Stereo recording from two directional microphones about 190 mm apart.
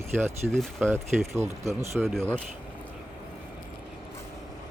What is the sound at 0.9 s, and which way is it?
Speech, 15° right (ahead or behind).